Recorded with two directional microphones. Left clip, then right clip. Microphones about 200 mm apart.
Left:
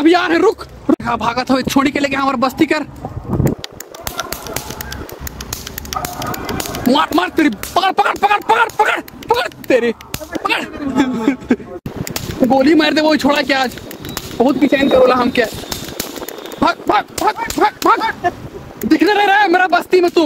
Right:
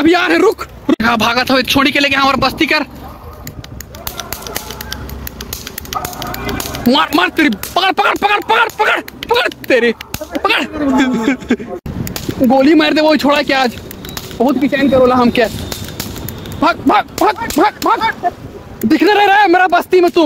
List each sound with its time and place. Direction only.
0.0 s speech: 5° right (ahead or behind)
5.9 s a sound: 30° left (ahead or behind)
6.9 s speech: centre (ahead or behind)
14.4 s speech: 10° left (ahead or behind)
15.1 s speech: 10° right (ahead or behind)
16.6 s speech: 10° right (ahead or behind)
18.8 s speech: 10° right (ahead or behind)